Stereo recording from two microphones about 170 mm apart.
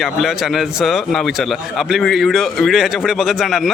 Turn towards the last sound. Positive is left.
turn(degrees=0)  # may be behind; listen again after turning